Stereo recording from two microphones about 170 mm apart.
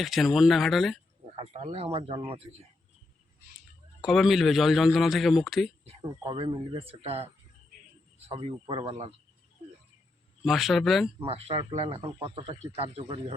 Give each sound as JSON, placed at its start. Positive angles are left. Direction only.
{"t": 0.0, "sound": "a man's voice", "side_deg": 0}
{"t": 1.4, "sound": "a man's voice", "side_deg": -40}
{"t": 4.0, "sound": "a man's voice", "side_deg": 0}
{"t": 5.8, "sound": "a sound", "side_deg": -35}
{"t": 6.1, "sound": "a man's voice", "side_deg": -25}
{"t": 8.3, "sound": "a man's voice", "side_deg": -35}
{"t": 10.4, "sound": "a man's voice", "side_deg": 0}
{"t": 11.2, "sound": "a man's voice", "side_deg": -35}